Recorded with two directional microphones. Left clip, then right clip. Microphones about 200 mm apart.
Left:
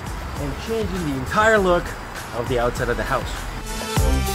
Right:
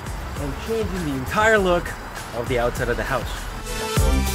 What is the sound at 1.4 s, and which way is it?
Speech, 20° right (ahead or behind).